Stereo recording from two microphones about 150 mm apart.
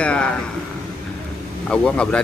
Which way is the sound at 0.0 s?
5° left (ahead or behind).